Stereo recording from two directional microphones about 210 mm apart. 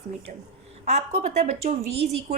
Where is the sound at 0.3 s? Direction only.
35° right (ahead or behind).